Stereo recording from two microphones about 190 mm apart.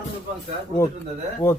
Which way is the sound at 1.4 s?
15° left (ahead or behind).